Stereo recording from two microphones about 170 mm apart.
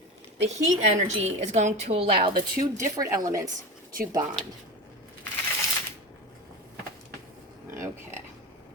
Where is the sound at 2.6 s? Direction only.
20° right (ahead or behind).